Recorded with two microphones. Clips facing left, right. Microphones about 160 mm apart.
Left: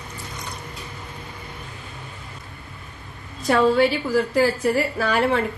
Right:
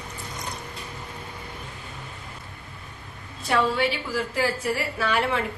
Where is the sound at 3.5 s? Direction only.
40° left (ahead or behind).